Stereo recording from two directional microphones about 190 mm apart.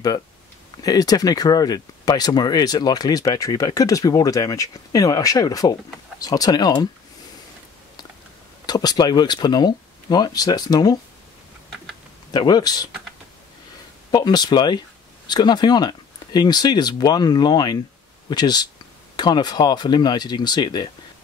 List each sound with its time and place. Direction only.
0.8 s speech: 20° left (ahead or behind)
8.6 s speech: 20° left (ahead or behind)
12.3 s speech: 20° left (ahead or behind)
14.1 s speech: 20° left (ahead or behind)